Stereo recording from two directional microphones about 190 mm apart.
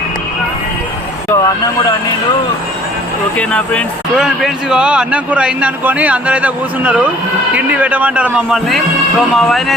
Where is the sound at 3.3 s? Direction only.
5° left (ahead or behind).